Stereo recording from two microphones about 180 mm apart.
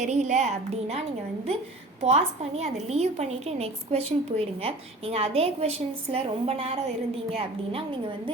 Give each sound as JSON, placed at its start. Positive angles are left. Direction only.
{"t": 0.0, "sound": "a woman's voice", "side_deg": -40}
{"t": 2.0, "sound": "a woman's voice", "side_deg": -35}